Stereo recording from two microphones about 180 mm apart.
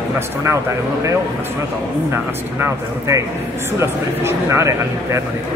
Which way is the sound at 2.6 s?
15° right (ahead or behind).